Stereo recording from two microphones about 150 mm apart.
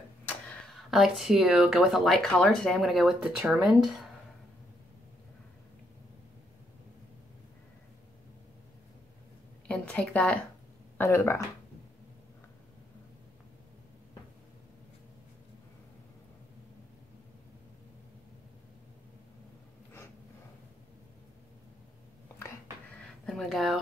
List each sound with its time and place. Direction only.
0.3 s speech: 5° left (ahead or behind)
9.7 s a sound: 10° left (ahead or behind)
11.0 s speech: 15° left (ahead or behind)
23.2 s speech: 5° left (ahead or behind)